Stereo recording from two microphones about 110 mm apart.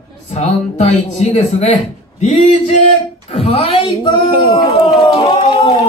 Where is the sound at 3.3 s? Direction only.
70° left (ahead or behind); by 4.7 s 50° left (ahead or behind).